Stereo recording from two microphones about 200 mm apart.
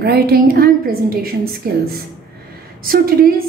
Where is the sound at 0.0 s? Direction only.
50° right (ahead or behind).